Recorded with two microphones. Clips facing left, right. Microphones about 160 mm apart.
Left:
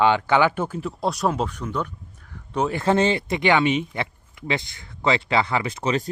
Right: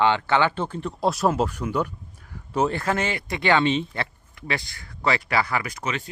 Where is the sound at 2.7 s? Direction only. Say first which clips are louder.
Left 6 dB; 25° left (ahead or behind).